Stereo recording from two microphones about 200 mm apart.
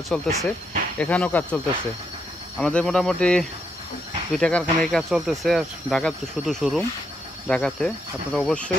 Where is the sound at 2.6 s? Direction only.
5° left (ahead or behind).